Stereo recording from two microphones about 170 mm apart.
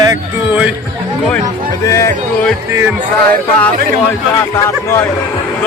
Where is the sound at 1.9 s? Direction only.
20° left (ahead or behind).